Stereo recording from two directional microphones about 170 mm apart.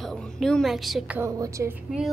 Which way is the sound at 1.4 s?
20° right (ahead or behind).